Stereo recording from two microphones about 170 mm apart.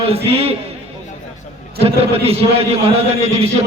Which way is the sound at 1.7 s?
35° right (ahead or behind).